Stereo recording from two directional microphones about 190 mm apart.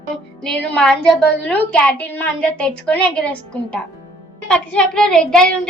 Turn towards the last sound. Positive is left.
turn(degrees=5)  # may be behind; listen again after turning